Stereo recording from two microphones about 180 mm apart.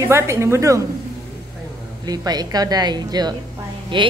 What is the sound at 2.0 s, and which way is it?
Speech, 20° right (ahead or behind).